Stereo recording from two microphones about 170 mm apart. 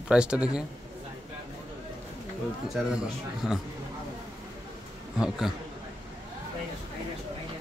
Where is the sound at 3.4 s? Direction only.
5° right (ahead or behind).